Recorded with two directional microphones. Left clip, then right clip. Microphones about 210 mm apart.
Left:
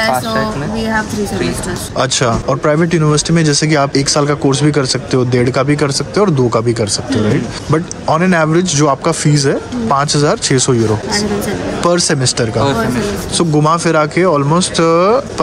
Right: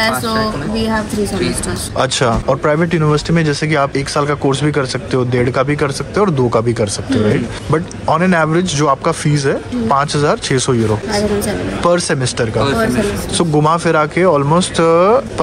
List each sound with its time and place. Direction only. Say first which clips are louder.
2.0 s speech: even; 15° left (ahead or behind)